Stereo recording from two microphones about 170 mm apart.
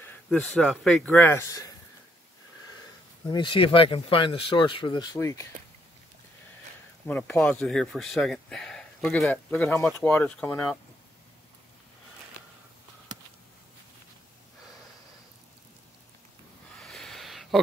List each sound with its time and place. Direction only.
0.0 s a man's voice: 5° left (ahead or behind)
3.3 s speech: 30° left (ahead or behind)
7.1 s a man's voice: 10° left (ahead or behind)
16.8 s a sound: centre (ahead or behind)